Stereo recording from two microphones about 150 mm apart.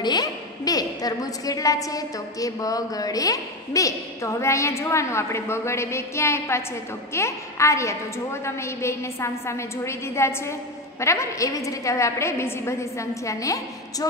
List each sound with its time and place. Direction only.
0.0 s a woman's voice: 25° left (ahead or behind)